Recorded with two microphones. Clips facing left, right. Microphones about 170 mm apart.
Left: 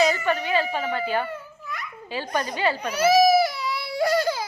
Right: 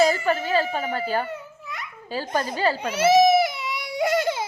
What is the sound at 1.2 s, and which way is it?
Babbling, 20° right (ahead or behind).